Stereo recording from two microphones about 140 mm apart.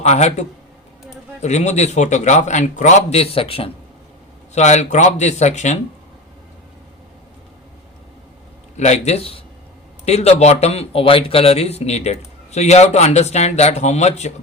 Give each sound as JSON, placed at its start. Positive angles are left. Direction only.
{"t": 0.0, "sound": "a man's voice", "side_deg": 55}
{"t": 4.5, "sound": "a man's voice", "side_deg": 55}
{"t": 8.7, "sound": "speech", "side_deg": 55}